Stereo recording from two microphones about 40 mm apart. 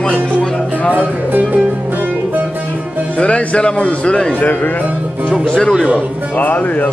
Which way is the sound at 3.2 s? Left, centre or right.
Left.